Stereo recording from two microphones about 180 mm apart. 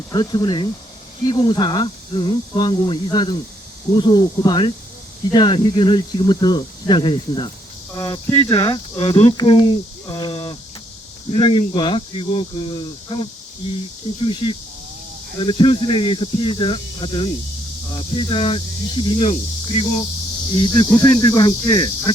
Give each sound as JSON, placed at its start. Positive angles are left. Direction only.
{"t": 0.1, "sound": "speech", "side_deg": 25}